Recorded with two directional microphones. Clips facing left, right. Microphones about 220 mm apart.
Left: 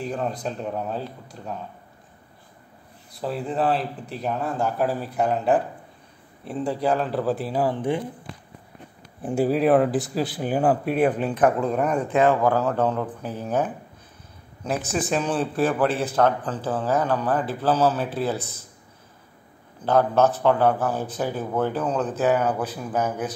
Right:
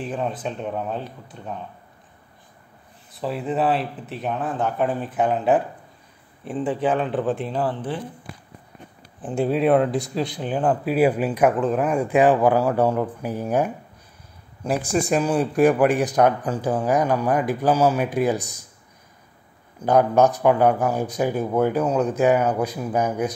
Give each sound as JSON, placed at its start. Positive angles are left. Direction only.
{"t": 0.0, "sound": "speech", "side_deg": -5}
{"t": 3.2, "sound": "speech", "side_deg": 0}
{"t": 9.2, "sound": "speech", "side_deg": 5}
{"t": 11.0, "sound": "a man's voice", "side_deg": -10}
{"t": 19.8, "sound": "a man's voice", "side_deg": -15}